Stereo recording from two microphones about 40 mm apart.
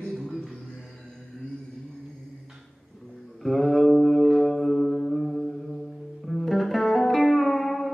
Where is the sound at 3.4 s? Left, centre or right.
Centre.